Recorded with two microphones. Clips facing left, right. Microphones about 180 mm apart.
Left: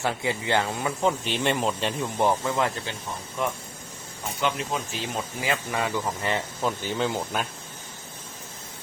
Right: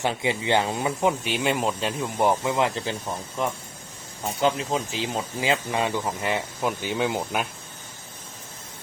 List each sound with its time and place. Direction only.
0.0 s speech: 20° right (ahead or behind)
1.3 s speech: 5° right (ahead or behind)
2.2 s speech: 15° right (ahead or behind)
4.4 s speech: 35° right (ahead or behind)
5.1 s speech: 25° right (ahead or behind)